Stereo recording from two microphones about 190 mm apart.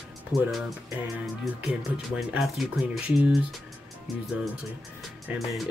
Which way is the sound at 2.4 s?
Centre (ahead or behind).